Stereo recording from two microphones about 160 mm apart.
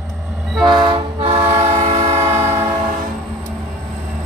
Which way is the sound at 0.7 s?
30° right (ahead or behind).